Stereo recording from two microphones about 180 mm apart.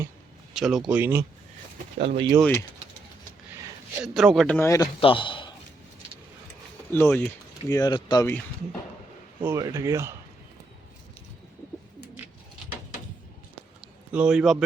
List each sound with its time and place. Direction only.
0.5 s speech: centre (ahead or behind)
2.0 s speech: 30° right (ahead or behind)
2.4 s speech: 10° left (ahead or behind)
4.0 s speech: centre (ahead or behind); by 4.9 s 15° left (ahead or behind)
4.9 s a man's voice: 30° left (ahead or behind)
6.9 s speech: 10° left (ahead or behind)
7.7 s speech: 20° left (ahead or behind)
9.4 s speech: 15° right (ahead or behind)
13.8 s a sound: 5° right (ahead or behind)